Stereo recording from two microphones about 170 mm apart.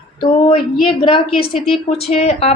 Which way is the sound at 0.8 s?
30° left (ahead or behind).